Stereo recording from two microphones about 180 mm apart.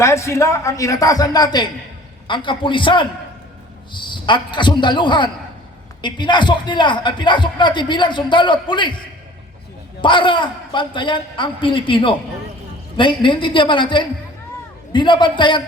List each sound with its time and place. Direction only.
0.0 s a man's voice: 15° left (ahead or behind)
10.0 s a man's voice: 25° left (ahead or behind)